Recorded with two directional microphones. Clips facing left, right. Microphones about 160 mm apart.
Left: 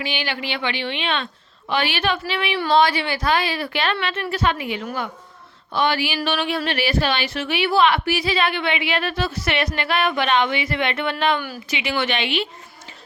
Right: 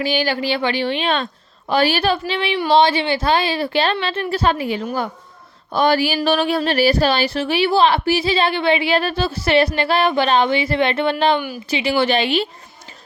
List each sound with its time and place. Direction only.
0.0 s a woman's voice: 40° right (ahead or behind)
11.3 s speech: 15° right (ahead or behind)
11.7 s a woman's voice: 30° right (ahead or behind)